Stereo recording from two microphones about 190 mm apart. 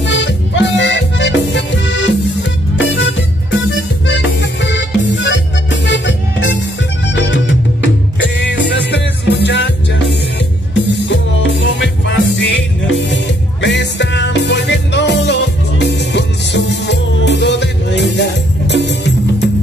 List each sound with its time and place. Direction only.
0.0 s music: 70° left (ahead or behind)